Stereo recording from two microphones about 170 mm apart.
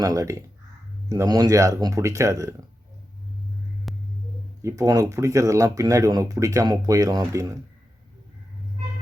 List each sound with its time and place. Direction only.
0.0 s speech: 20° right (ahead or behind)
3.9 s a sound: centre (ahead or behind)
4.8 s speech: 20° right (ahead or behind)